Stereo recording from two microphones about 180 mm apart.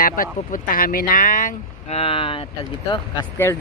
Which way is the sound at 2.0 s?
30° left (ahead or behind).